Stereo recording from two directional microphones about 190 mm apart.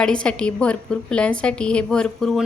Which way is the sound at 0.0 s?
5° left (ahead or behind).